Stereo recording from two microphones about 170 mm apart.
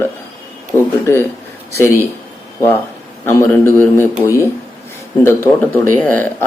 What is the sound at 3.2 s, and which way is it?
Speech, 15° left (ahead or behind).